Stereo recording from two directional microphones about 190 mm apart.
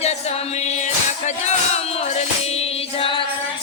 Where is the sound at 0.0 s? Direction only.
35° left (ahead or behind).